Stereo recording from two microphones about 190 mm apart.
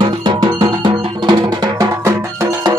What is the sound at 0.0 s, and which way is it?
Music, 25° right (ahead or behind).